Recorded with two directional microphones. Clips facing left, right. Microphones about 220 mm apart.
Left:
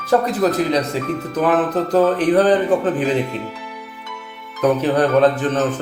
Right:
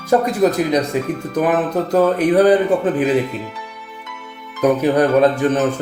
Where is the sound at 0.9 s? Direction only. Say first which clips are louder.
Right 3 dB; 50° right (ahead or behind).